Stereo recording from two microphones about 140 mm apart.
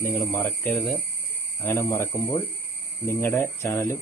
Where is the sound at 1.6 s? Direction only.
20° left (ahead or behind).